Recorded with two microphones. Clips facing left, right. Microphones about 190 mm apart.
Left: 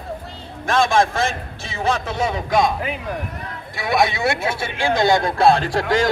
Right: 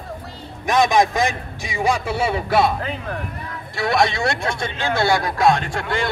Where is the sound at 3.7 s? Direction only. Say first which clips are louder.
Even; centre (ahead or behind); by 6.0 s 40° left (ahead or behind).